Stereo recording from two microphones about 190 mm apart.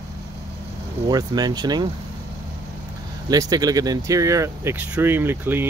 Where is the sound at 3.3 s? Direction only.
20° right (ahead or behind).